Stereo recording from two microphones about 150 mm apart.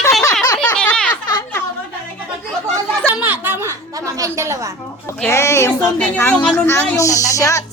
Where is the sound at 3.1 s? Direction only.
10° right (ahead or behind).